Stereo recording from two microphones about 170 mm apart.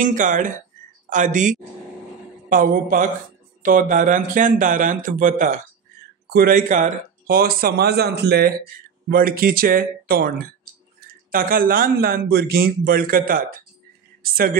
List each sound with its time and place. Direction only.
0.0 s speech: 50° right (ahead or behind)
6.2 s speech: 65° right (ahead or behind)